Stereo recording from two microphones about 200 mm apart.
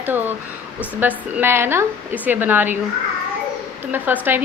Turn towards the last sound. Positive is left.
turn(degrees=-10)  # may be behind; listen again after turning